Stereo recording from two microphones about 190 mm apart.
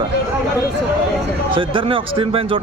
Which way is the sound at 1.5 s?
30° right (ahead or behind).